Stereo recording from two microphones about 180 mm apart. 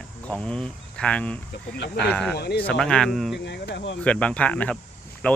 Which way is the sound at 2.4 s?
60° left (ahead or behind).